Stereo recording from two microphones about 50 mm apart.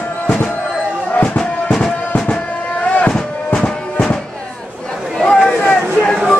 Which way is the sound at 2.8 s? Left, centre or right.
Left.